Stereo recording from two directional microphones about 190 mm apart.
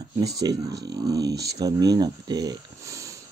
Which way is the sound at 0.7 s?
20° right (ahead or behind).